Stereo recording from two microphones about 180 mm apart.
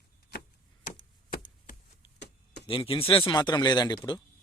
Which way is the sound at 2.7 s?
30° left (ahead or behind).